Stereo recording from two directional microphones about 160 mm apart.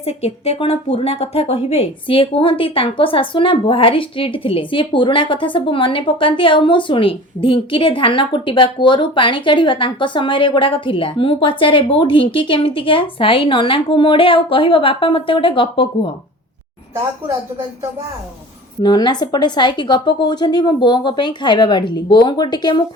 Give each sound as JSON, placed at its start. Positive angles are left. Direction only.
{"t": 0.0, "sound": "speech", "side_deg": 40}
{"t": 18.8, "sound": "a woman's voice", "side_deg": 25}